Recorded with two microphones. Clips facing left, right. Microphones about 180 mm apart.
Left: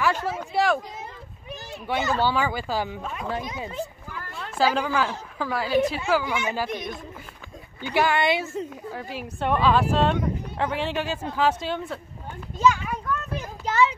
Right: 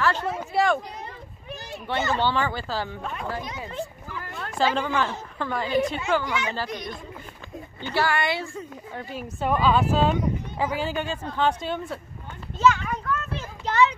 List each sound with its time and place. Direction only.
0.0 s speech: 10° left (ahead or behind)
2.0 s speech: 10° left (ahead or behind)
3.0 s speech: 5° left (ahead or behind)
3.3 s speech: 20° left (ahead or behind)
4.3 s a woman's voice: centre (ahead or behind)
7.8 s speech: 15° left (ahead or behind)
8.9 s speech: centre (ahead or behind)
12.5 s a sound: 10° left (ahead or behind)